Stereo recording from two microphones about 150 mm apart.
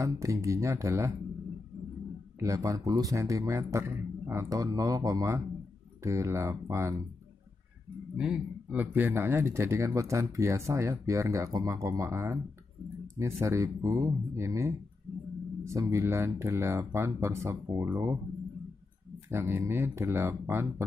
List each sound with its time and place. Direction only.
0.0 s speech: 20° right (ahead or behind)
2.4 s speech: 20° right (ahead or behind)
8.2 s speech: 10° right (ahead or behind)
19.3 s speech: 15° right (ahead or behind)